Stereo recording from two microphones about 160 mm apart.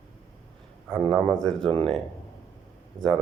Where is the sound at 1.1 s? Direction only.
5° left (ahead or behind).